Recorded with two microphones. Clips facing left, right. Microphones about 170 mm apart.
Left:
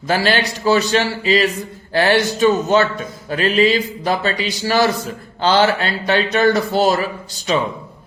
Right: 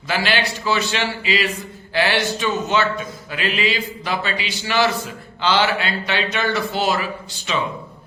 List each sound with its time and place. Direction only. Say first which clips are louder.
0.1 s speech: left 4 dB; 40° left (ahead or behind)